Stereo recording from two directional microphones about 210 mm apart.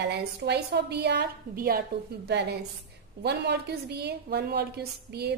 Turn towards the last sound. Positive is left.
turn(degrees=-50)  # may be behind; listen again after turning